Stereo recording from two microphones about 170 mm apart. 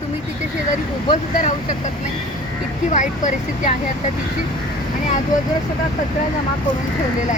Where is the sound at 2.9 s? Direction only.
45° left (ahead or behind).